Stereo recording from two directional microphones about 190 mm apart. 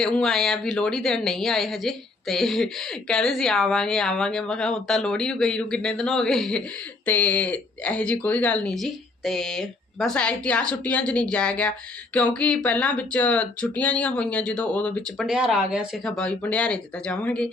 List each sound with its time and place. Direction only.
0.0 s speech: centre (ahead or behind)